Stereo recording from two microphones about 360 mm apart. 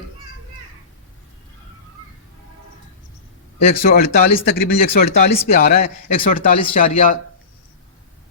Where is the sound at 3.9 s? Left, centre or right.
Left.